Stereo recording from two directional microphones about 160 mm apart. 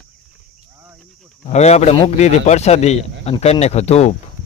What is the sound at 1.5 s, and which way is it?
Speech, 45° left (ahead or behind).